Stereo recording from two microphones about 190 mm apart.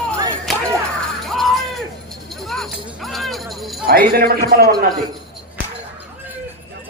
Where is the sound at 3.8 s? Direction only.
50° right (ahead or behind).